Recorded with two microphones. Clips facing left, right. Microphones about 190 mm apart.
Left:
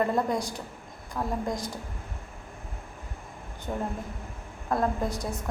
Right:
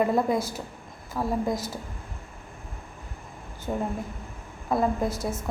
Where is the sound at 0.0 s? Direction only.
5° right (ahead or behind).